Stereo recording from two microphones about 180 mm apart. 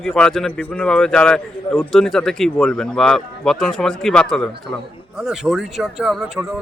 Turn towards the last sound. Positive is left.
turn(degrees=0)  # may be behind; listen again after turning